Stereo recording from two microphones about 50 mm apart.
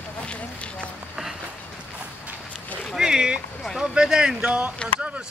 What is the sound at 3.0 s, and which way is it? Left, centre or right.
Speech, centre.